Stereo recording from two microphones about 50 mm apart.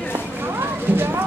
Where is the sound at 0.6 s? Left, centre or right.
Right.